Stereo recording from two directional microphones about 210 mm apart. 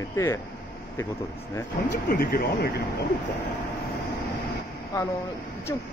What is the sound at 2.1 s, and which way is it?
Speech, 45° left (ahead or behind).